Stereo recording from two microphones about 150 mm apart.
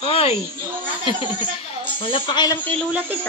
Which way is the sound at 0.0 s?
40° left (ahead or behind).